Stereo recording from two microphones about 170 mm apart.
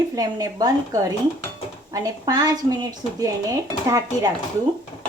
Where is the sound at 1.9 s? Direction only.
20° right (ahead or behind).